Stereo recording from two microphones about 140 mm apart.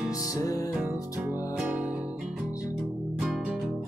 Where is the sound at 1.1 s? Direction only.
15° right (ahead or behind).